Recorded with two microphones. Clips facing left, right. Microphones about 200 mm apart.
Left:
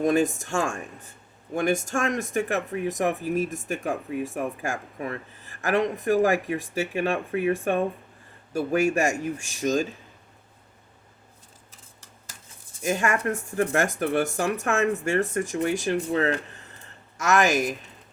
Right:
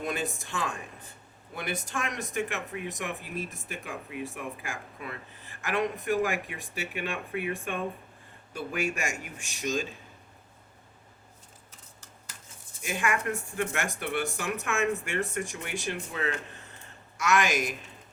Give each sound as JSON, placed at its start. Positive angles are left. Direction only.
{"t": 0.0, "sound": "speech", "side_deg": 40}
{"t": 12.8, "sound": "speech", "side_deg": 40}